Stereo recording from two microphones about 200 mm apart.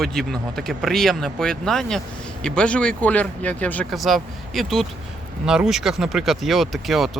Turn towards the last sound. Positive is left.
turn(degrees=0)  # may be behind; listen again after turning